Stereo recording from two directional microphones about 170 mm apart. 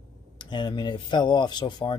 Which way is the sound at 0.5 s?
25° left (ahead or behind).